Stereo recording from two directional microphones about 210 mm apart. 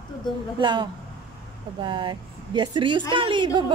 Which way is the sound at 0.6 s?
20° right (ahead or behind).